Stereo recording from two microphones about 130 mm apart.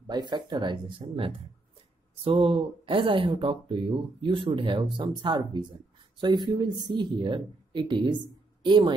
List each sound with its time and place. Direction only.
0.0 s speech: 35° right (ahead or behind)